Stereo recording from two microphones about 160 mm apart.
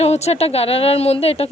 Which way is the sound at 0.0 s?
40° left (ahead or behind).